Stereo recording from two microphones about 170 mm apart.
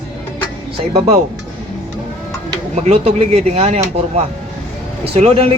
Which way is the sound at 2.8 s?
35° right (ahead or behind).